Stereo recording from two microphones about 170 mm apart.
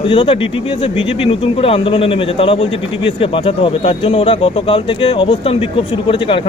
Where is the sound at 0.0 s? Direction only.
30° left (ahead or behind).